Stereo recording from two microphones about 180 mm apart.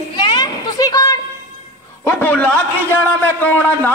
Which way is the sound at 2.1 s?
10° left (ahead or behind).